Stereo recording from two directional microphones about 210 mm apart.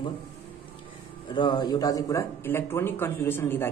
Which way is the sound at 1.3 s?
20° left (ahead or behind).